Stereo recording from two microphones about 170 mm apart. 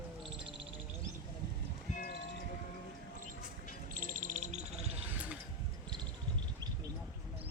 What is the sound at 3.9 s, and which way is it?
Bird, 55° right (ahead or behind).